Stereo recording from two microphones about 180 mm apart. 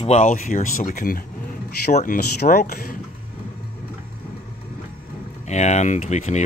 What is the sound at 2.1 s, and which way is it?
Speech, 60° left (ahead or behind).